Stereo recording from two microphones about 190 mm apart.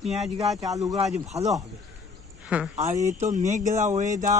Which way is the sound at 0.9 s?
35° right (ahead or behind).